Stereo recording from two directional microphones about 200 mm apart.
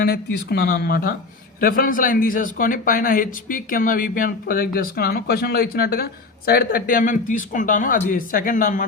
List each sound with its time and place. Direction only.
0.0 s a man's voice: 50° left (ahead or behind)